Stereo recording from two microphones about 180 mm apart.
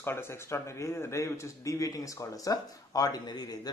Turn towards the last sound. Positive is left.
turn(degrees=20)  # may be behind; listen again after turning